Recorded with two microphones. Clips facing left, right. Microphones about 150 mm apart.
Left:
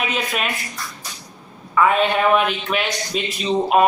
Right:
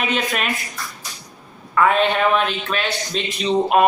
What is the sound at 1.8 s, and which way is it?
Speech, centre (ahead or behind).